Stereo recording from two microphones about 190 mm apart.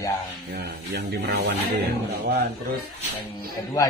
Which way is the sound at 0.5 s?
60° right (ahead or behind).